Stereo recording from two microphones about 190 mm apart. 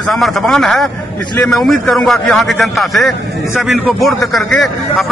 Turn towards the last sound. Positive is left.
turn(degrees=0)  # may be behind; listen again after turning